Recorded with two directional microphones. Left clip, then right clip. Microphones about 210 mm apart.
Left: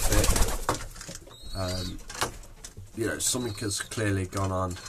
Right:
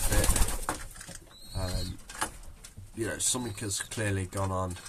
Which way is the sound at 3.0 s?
15° right (ahead or behind).